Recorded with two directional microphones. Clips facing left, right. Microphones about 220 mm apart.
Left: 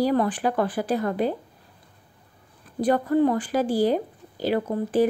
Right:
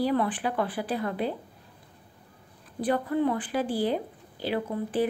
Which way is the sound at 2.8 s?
45° left (ahead or behind).